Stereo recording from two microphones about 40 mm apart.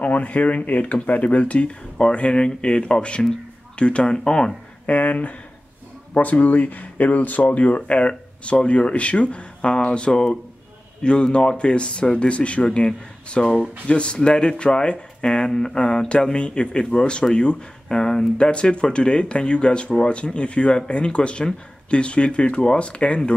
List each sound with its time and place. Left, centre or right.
0.0 s speech: left
4.8 s speech: left